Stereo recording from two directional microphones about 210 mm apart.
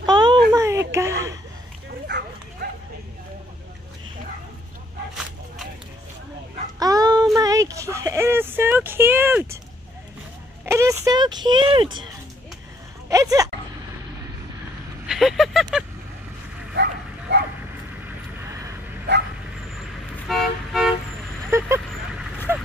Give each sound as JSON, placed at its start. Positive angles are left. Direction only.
{"t": 0.0, "sound": "a sound", "side_deg": -20}
{"t": 2.0, "sound": "dog", "side_deg": -55}
{"t": 6.8, "sound": "dog", "side_deg": -15}
{"t": 7.3, "sound": "a sound", "side_deg": -15}
{"t": 10.6, "sound": "a sound", "side_deg": -10}
{"t": 13.1, "sound": "a sound", "side_deg": -15}
{"t": 15.0, "sound": "vehicle", "side_deg": 0}
{"t": 16.7, "sound": "bow-wow", "side_deg": -55}
{"t": 19.1, "sound": "dog", "side_deg": -55}
{"t": 20.2, "sound": "toot", "side_deg": 0}
{"t": 21.5, "sound": "vehicle", "side_deg": -15}
{"t": 22.5, "sound": "dog", "side_deg": -10}